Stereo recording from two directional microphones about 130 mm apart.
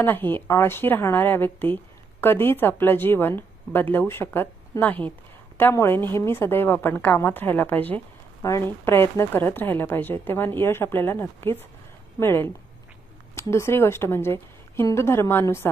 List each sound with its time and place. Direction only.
0.0 s a woman's voice: 15° left (ahead or behind)
8.4 s a woman's voice: 25° left (ahead or behind)